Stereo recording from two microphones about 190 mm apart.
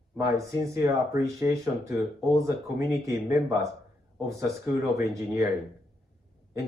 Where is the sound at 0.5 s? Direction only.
20° right (ahead or behind).